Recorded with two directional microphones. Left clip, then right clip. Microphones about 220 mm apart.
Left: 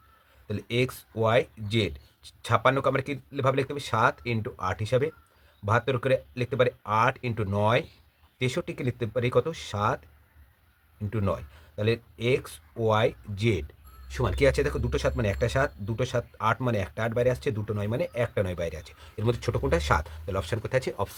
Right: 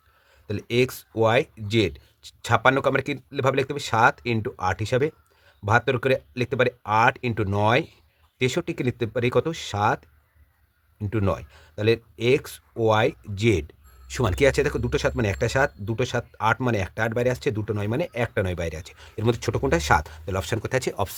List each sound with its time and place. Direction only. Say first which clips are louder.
0.4 s speech: right 5 dB; 45° right (ahead or behind)
11.1 s speech: right 4 dB; 50° right (ahead or behind)